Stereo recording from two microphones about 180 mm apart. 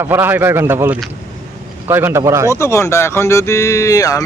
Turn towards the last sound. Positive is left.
turn(degrees=20)  # may be behind; listen again after turning